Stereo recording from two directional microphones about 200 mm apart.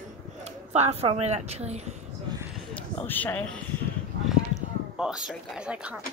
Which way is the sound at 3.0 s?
10° left (ahead or behind).